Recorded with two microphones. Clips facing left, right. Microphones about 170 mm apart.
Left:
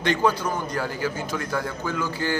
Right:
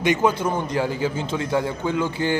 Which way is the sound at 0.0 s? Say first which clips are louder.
Right 3 dB; 15° right (ahead or behind).